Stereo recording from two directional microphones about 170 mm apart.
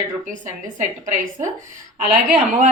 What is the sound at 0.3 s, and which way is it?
Speech, 50° right (ahead or behind).